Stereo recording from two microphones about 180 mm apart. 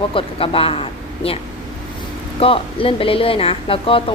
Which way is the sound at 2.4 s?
30° left (ahead or behind).